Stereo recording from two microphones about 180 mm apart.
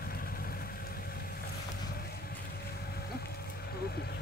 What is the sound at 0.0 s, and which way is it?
Vehicle, 55° left (ahead or behind).